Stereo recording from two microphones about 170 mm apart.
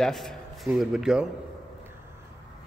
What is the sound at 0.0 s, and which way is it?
A man's voice, centre (ahead or behind).